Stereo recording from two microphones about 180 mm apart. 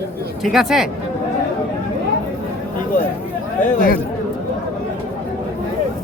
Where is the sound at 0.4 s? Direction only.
Centre (ahead or behind).